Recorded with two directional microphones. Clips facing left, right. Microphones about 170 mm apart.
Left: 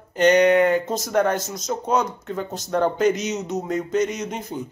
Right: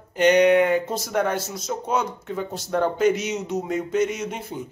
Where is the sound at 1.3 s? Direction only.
45° left (ahead or behind).